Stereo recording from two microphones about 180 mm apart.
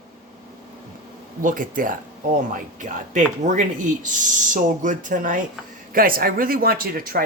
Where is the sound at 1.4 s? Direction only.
50° right (ahead or behind).